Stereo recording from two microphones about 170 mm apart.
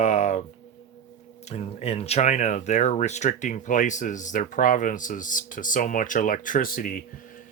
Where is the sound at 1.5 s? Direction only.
40° left (ahead or behind); by 7.0 s 55° left (ahead or behind).